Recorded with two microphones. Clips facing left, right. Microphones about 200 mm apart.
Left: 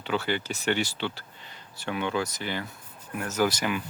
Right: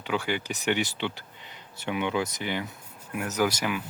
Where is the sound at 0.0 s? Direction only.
15° right (ahead or behind).